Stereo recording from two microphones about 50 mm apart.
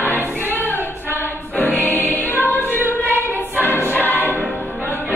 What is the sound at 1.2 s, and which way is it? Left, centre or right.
Music, left.